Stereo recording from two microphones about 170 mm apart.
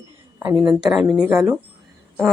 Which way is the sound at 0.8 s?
5° right (ahead or behind).